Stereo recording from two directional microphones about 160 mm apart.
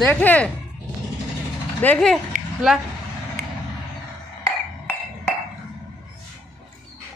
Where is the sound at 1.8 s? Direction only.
5° left (ahead or behind).